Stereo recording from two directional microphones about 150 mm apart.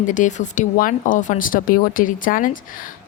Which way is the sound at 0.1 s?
55° left (ahead or behind).